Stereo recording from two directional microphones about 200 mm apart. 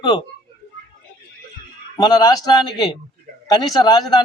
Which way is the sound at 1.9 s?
20° left (ahead or behind).